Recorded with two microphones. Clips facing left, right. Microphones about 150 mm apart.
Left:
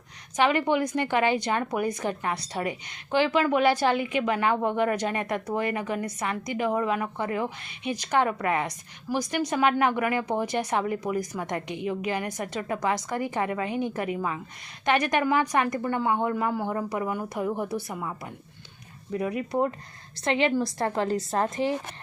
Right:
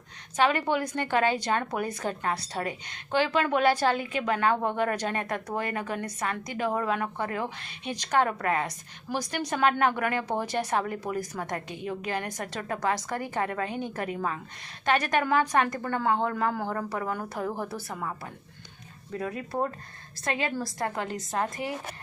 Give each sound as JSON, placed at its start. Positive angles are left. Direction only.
{"t": 0.3, "sound": "a woman's voice", "side_deg": 15}
{"t": 19.1, "sound": "a woman's voice", "side_deg": 15}